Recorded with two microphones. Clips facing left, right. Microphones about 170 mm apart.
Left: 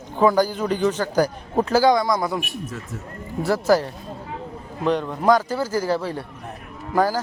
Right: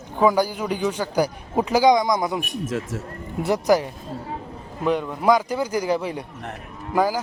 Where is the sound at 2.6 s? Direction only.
90° right.